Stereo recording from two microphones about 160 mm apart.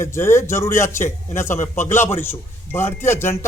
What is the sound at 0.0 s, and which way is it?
A man's voice, 15° left (ahead or behind).